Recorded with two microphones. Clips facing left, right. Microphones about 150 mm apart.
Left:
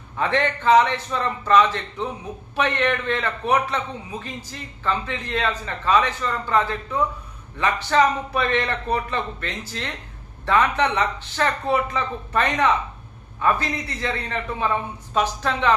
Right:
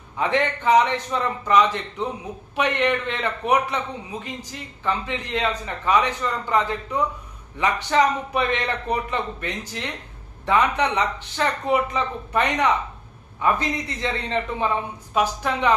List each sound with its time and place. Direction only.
0.2 s a man's voice: 15° right (ahead or behind)